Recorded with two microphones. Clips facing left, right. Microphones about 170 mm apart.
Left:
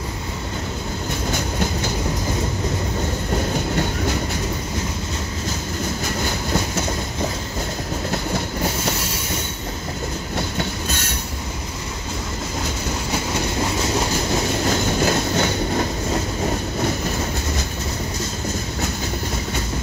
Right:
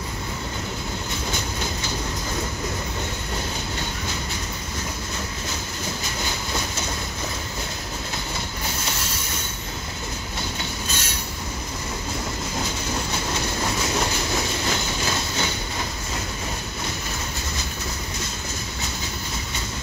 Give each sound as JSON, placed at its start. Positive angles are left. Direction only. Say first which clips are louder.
{"t": 14.7, "sound": "train", "louder": "left 7 dB", "side_deg": 50}